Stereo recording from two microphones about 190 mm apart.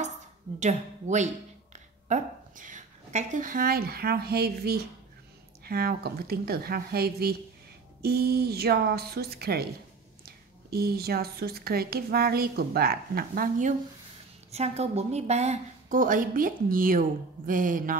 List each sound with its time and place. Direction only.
0.6 s a woman's voice: 40° right (ahead or behind)
14.5 s a woman's voice: 35° right (ahead or behind)